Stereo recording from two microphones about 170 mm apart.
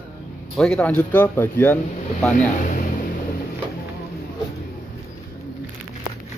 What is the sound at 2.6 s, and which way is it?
Speech, 50° left (ahead or behind).